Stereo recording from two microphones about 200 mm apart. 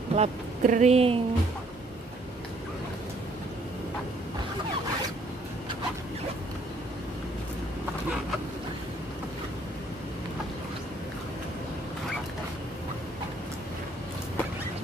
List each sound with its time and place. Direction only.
0.1 s speech: 35° right (ahead or behind)